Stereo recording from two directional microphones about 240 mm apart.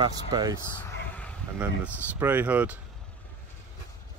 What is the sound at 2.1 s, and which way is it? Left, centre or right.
Speech, centre.